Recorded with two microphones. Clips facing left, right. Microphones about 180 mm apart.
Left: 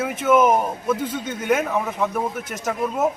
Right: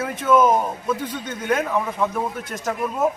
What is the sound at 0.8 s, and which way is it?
Speech, 5° left (ahead or behind).